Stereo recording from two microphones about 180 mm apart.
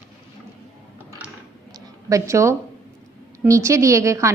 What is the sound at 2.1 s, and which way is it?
A woman's voice, 15° right (ahead or behind).